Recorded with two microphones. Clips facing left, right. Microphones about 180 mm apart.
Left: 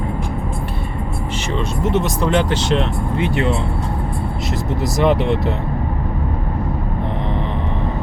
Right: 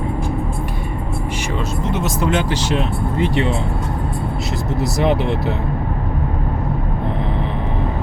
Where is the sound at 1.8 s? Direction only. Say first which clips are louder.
Left 3 dB; centre (ahead or behind).